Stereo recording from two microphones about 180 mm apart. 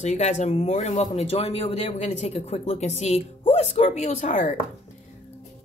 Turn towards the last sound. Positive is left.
turn(degrees=45)  # may be behind; listen again after turning